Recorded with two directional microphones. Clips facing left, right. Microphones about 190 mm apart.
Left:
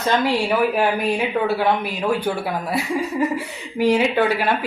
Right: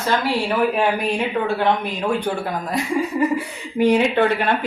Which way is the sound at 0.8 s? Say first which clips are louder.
Even; 5° left (ahead or behind).